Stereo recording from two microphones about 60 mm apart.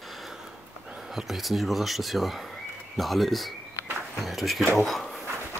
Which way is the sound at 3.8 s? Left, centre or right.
Left.